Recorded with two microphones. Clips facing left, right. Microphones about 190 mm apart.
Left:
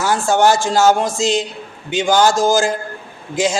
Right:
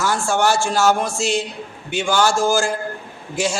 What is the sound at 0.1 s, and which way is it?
A man's voice, 20° left (ahead or behind).